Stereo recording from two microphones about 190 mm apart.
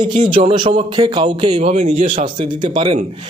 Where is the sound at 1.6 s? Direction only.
35° right (ahead or behind).